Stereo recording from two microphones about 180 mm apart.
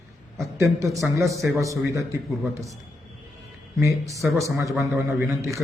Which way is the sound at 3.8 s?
15° right (ahead or behind).